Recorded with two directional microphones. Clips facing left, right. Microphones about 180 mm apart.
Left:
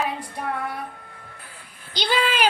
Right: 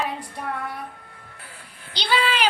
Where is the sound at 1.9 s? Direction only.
45° left (ahead or behind).